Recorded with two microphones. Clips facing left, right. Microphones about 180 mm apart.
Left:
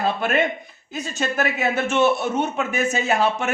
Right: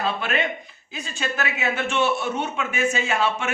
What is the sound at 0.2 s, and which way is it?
A man's voice, 45° left (ahead or behind).